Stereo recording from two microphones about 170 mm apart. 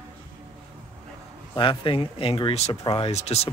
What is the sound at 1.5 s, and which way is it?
Speech, 30° left (ahead or behind).